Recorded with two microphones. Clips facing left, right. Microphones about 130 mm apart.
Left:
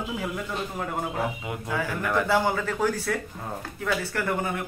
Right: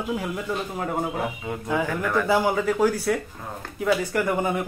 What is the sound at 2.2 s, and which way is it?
Speech, 10° right (ahead or behind).